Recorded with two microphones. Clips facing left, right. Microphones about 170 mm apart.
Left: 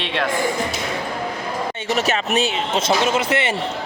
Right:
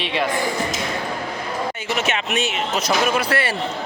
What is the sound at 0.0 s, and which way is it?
Speech, centre (ahead or behind).